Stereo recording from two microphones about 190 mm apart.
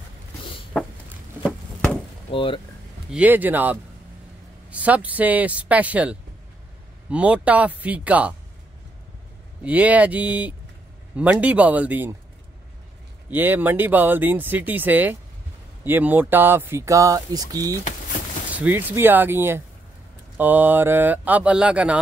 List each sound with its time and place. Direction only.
0.4 s a sound: 30° left (ahead or behind)
2.3 s speech: 30° left (ahead or behind)
3.1 s speech: 10° right (ahead or behind)
9.6 s speech: 5° right (ahead or behind)
13.3 s speech: 10° right (ahead or behind)
18.5 s speech: 10° right (ahead or behind)